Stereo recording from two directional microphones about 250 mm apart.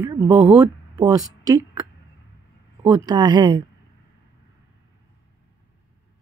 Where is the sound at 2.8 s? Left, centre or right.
Centre.